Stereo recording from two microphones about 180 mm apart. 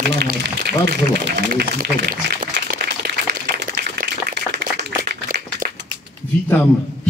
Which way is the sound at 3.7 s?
55° right (ahead or behind).